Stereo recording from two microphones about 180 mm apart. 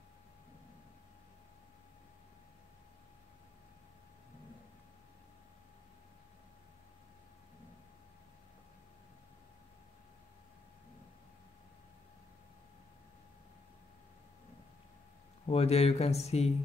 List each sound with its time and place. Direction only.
15.4 s speech: 35° left (ahead or behind)